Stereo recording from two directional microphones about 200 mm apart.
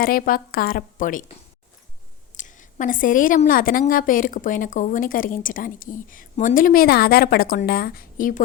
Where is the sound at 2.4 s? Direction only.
40° left (ahead or behind).